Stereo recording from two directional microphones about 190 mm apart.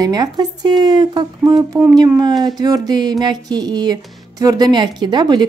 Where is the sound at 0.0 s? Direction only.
20° right (ahead or behind).